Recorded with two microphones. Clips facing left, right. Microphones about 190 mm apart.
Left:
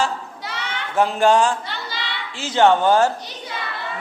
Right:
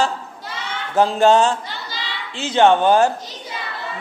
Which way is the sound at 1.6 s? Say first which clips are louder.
Left 1 dB; 65° left (ahead or behind).